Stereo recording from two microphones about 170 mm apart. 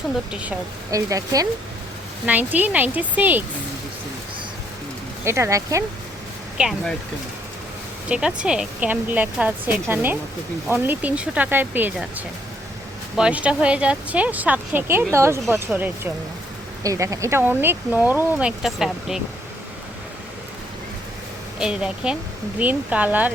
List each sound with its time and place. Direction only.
0.9 s speech: 20° right (ahead or behind)
2.2 s speech: 10° right (ahead or behind)
5.2 s speech: 15° right (ahead or behind)
6.6 s speech: centre (ahead or behind)
8.1 s speech: 5° right (ahead or behind)
21.6 s speech: 5° right (ahead or behind)